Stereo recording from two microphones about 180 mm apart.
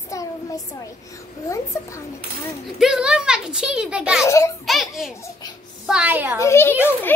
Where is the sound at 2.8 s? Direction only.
5° right (ahead or behind).